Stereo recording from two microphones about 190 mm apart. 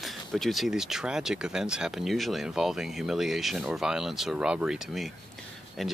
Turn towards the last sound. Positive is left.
turn(degrees=0)  # may be behind; listen again after turning